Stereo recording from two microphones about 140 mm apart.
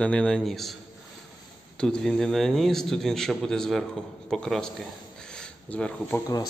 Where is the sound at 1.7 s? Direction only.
5° left (ahead or behind).